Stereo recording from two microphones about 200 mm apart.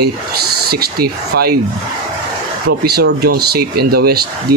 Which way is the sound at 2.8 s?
50° right (ahead or behind).